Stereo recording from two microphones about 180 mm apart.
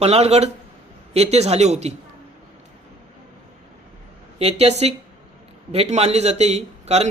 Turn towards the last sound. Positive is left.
turn(degrees=-35)  # may be behind; listen again after turning